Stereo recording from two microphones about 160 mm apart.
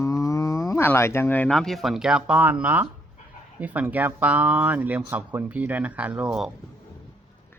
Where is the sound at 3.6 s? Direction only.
10° right (ahead or behind).